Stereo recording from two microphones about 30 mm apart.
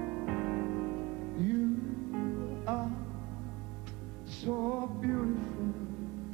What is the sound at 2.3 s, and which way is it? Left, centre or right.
Music, centre.